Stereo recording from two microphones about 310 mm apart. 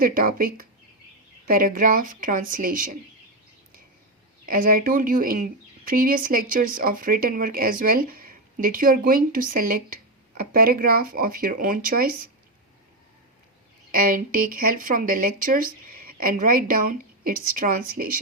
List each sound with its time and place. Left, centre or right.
0.0 s speech: right
4.4 s speech: right
13.9 s speech: right